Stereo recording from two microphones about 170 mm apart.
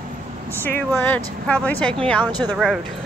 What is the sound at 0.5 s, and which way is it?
Speech, 10° left (ahead or behind).